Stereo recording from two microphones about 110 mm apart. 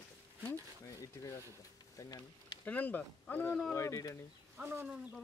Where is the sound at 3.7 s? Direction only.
30° left (ahead or behind).